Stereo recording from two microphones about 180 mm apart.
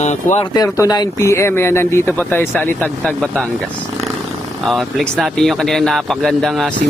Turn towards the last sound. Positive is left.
turn(degrees=0)  # may be behind; listen again after turning